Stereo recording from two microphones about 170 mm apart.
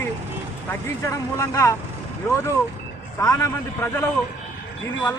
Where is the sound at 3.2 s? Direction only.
20° left (ahead or behind).